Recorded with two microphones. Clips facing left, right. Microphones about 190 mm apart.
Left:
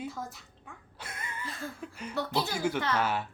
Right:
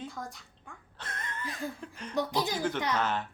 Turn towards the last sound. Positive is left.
turn(degrees=10)  # may be behind; listen again after turning